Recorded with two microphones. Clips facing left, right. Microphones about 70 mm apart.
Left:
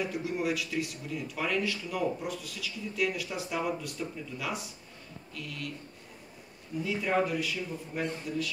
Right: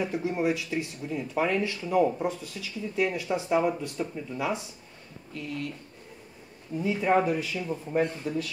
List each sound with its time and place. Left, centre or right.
0.0 s speech: right
6.8 s speech: right